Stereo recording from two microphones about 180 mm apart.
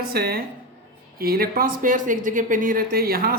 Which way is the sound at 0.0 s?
60° right (ahead or behind).